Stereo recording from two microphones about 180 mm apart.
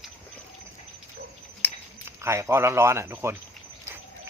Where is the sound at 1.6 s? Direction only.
10° left (ahead or behind).